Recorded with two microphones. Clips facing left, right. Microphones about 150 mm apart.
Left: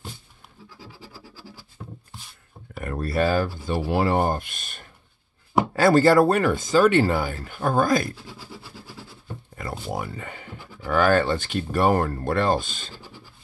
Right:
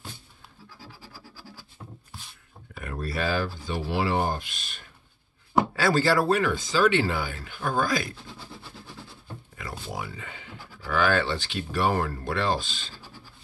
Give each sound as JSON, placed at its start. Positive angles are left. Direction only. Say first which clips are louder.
{"t": 2.7, "sound": "speech", "louder": "left 6 dB", "side_deg": 45}
{"t": 9.6, "sound": "speech", "louder": "left 5 dB", "side_deg": 50}